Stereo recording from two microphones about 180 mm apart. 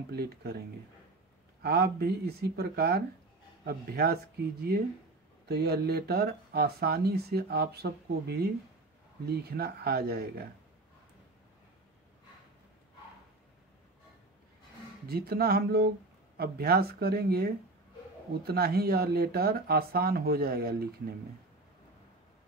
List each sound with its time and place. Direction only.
0.1 s speech: 60° right (ahead or behind)
15.0 s speech: 60° right (ahead or behind)